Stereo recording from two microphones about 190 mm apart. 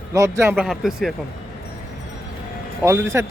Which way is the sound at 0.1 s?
15° right (ahead or behind).